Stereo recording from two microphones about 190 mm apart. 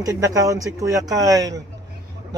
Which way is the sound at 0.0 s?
15° right (ahead or behind).